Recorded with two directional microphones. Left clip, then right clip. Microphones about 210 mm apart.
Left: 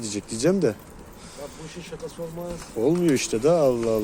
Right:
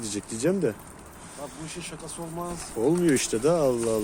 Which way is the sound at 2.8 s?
5° left (ahead or behind).